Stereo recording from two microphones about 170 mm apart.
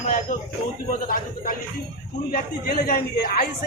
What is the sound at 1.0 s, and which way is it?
A man's voice, 55° left (ahead or behind).